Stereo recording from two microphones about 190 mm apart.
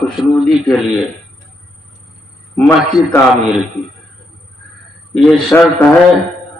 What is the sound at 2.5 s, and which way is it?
A man's voice, 5° left (ahead or behind).